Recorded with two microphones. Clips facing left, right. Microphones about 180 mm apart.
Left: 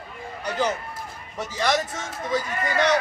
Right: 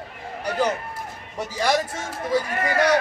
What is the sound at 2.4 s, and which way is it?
Speech, 60° right (ahead or behind).